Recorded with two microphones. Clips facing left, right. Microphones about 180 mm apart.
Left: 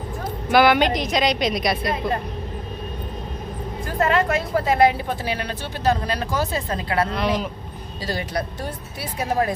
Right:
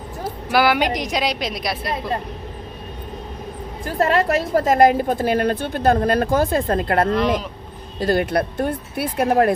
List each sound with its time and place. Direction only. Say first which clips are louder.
0.5 s a woman's voice: left 1 dB; 5° right (ahead or behind)
4.0 s a woman's voice: right 2 dB; 40° right (ahead or behind); by 9.5 s 60° right (ahead or behind)